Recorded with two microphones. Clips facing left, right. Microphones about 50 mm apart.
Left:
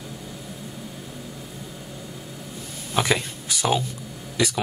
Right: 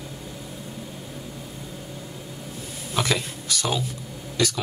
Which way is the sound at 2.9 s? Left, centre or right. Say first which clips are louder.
Left 2 dB; centre.